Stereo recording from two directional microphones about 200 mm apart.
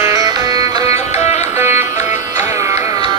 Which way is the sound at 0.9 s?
30° left (ahead or behind).